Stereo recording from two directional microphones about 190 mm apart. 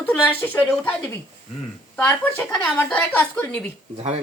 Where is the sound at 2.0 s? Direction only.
10° left (ahead or behind).